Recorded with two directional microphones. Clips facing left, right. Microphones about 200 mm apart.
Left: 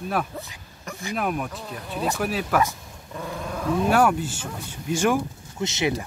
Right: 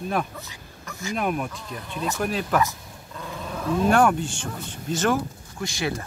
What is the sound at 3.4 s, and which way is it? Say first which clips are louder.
Speech: right 1 dB; centre (ahead or behind).